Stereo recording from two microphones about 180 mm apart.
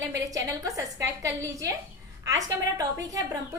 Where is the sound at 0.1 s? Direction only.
20° right (ahead or behind).